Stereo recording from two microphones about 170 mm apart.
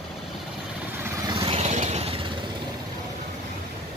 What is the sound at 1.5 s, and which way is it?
Vehicle, 40° right (ahead or behind).